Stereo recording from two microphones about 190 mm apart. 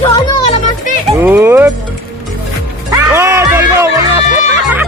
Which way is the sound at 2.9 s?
15° right (ahead or behind).